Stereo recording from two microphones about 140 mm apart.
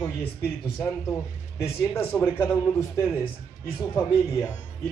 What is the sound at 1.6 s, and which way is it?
Speech, 15° left (ahead or behind).